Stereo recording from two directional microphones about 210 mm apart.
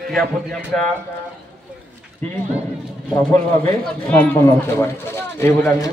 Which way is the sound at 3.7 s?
10° left (ahead or behind).